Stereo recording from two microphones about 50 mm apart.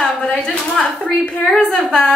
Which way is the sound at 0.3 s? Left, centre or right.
Centre.